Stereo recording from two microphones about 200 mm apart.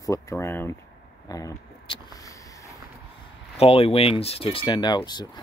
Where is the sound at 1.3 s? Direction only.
20° left (ahead or behind).